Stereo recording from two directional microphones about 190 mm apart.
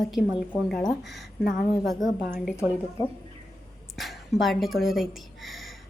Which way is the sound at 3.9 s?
Centre (ahead or behind).